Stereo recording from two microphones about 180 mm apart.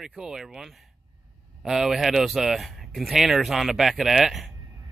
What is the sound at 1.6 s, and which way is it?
Speech, centre (ahead or behind).